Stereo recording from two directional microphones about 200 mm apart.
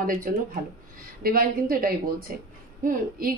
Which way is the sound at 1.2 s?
45° right (ahead or behind).